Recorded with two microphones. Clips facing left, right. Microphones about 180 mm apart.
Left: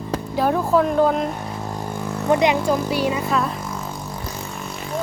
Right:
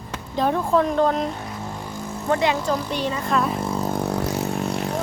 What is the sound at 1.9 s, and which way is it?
Vehicle, 65° left (ahead or behind).